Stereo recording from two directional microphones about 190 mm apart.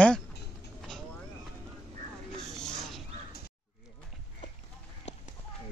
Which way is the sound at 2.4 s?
Centre (ahead or behind).